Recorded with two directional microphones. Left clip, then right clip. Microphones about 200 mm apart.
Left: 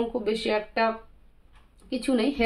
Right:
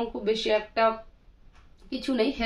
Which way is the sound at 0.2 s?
45° left (ahead or behind).